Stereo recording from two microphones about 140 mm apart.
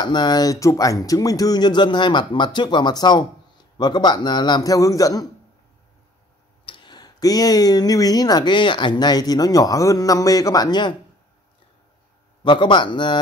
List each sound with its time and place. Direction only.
0.0 s speech: 30° left (ahead or behind)
6.6 s speech: 35° left (ahead or behind)
12.4 s speech: 35° left (ahead or behind)